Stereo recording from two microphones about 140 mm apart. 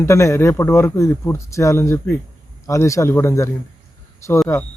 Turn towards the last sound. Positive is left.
turn(degrees=20)  # may be behind; listen again after turning